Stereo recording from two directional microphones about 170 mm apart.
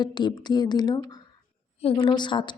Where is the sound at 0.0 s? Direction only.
25° left (ahead or behind).